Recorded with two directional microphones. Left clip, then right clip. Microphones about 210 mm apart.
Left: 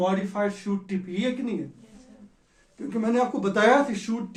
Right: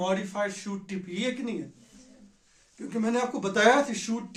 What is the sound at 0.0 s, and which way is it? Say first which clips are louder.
Speech: left 3 dB; 25° right (ahead or behind).